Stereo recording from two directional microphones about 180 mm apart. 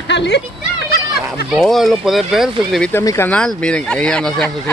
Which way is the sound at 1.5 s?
Centre (ahead or behind).